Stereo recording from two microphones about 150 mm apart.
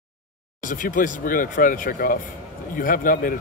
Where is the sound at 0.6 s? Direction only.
65° left (ahead or behind).